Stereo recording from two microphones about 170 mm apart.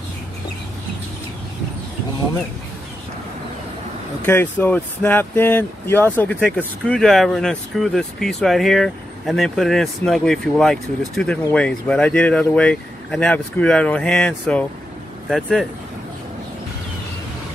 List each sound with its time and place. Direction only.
4.3 s speech: 10° left (ahead or behind)